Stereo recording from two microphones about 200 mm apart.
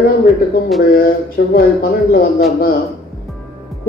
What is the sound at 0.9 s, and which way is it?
Speech, 45° left (ahead or behind).